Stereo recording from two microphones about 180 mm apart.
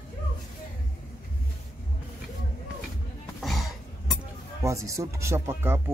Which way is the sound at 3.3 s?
Centre (ahead or behind).